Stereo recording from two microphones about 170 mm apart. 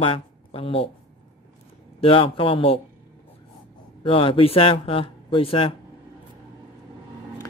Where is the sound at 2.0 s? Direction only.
30° left (ahead or behind).